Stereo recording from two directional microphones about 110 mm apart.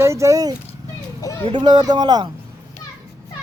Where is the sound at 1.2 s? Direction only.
30° left (ahead or behind).